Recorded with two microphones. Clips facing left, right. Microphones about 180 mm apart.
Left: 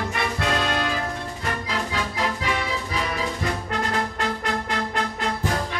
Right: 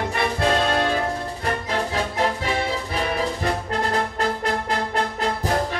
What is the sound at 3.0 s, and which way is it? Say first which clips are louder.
Music: right 4 dB; 55° right (ahead or behind).